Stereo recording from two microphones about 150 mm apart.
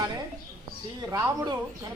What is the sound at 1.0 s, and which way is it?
Speech, 20° right (ahead or behind).